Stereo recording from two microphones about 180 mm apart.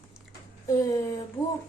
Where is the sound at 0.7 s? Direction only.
20° left (ahead or behind).